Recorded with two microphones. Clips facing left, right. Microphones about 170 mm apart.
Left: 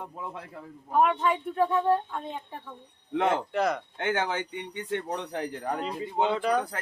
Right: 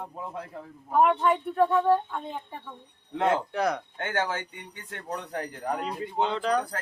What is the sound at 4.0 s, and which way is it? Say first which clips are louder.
Speech: left 1 dB; 20° left (ahead or behind).